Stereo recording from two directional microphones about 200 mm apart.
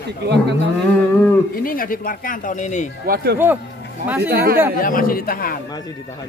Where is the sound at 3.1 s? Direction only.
50° right (ahead or behind).